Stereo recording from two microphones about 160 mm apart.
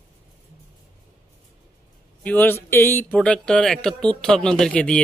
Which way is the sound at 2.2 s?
10° left (ahead or behind).